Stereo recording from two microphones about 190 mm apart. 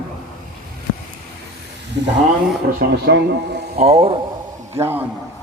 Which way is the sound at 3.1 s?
60° right (ahead or behind).